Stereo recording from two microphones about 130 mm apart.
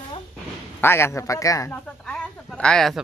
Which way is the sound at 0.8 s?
20° left (ahead or behind).